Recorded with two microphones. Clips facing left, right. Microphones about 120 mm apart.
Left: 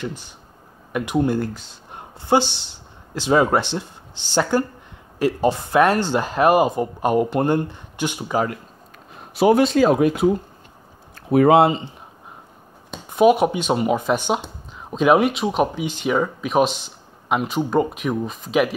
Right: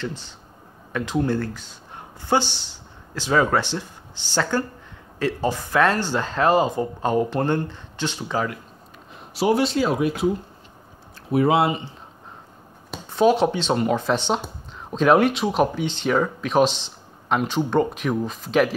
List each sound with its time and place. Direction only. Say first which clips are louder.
0.9 s speech: left 3 dB; 15° left (ahead or behind)
2.0 s a sound: left 3 dB; 20° left (ahead or behind)
2.7 s speech: left 3 dB; 20° left (ahead or behind)
9.3 s speech: left 5 dB; 55° left (ahead or behind)
11.1 s a sound: left 5 dB; 55° left (ahead or behind)
13.1 s speech: left 3 dB; 10° left (ahead or behind)